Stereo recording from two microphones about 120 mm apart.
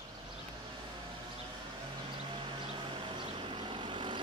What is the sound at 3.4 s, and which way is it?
Vehicle, 45° right (ahead or behind).